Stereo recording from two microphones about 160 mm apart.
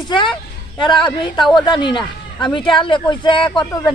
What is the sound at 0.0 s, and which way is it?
A woman's voice, 30° left (ahead or behind).